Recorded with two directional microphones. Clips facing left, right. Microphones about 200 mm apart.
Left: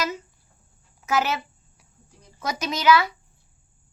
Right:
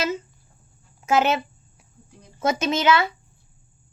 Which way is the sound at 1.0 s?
25° right (ahead or behind).